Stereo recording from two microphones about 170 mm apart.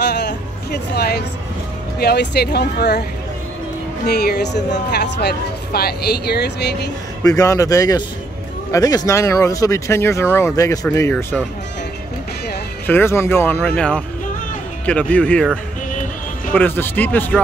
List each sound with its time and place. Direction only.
0.0 s music: 75° left (ahead or behind)
2.0 s speech: 70° left (ahead or behind)
4.0 s speech: 70° left (ahead or behind)
7.2 s speech: 20° left (ahead or behind)
12.8 s speech: 15° left (ahead or behind)